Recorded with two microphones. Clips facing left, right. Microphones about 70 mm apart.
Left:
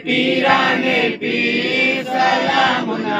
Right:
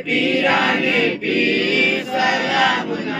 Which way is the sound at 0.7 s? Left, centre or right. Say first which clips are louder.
Left 1 dB; left.